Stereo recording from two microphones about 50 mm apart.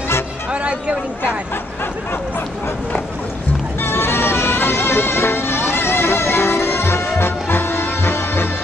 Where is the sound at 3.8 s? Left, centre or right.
Left.